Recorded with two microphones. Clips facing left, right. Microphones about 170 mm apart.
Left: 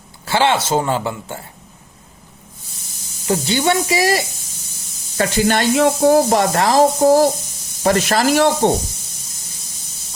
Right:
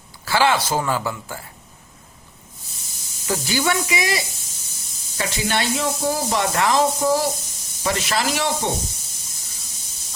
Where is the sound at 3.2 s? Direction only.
25° left (ahead or behind).